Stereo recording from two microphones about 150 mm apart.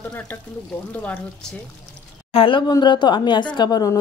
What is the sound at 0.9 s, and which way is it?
Speech, 10° left (ahead or behind).